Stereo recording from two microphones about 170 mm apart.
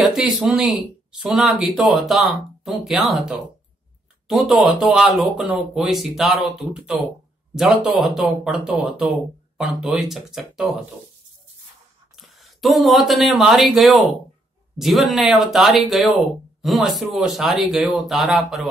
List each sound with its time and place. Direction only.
0.0 s speech: centre (ahead or behind)
12.2 s speech: centre (ahead or behind)